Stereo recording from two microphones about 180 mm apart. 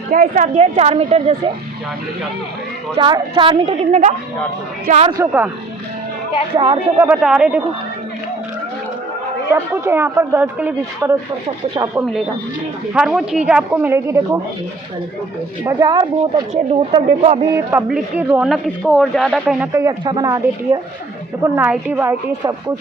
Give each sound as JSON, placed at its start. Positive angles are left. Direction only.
{"t": 0.1, "sound": "a woman's voice", "side_deg": -45}
{"t": 2.9, "sound": "a woman's voice", "side_deg": -25}
{"t": 5.0, "sound": "speech", "side_deg": -15}
{"t": 6.5, "sound": "a woman's voice", "side_deg": -30}
{"t": 7.0, "sound": "speech", "side_deg": -5}
{"t": 9.6, "sound": "speech", "side_deg": -15}
{"t": 12.9, "sound": "speech", "side_deg": -5}
{"t": 15.6, "sound": "a woman's voice", "side_deg": -20}
{"t": 16.9, "sound": "a woman's voice", "side_deg": -35}
{"t": 17.5, "sound": "speech", "side_deg": -15}
{"t": 19.7, "sound": "a woman's voice", "side_deg": -20}